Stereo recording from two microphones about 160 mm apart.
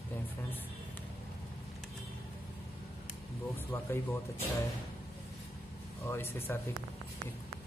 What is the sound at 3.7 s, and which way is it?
Speech, 15° left (ahead or behind).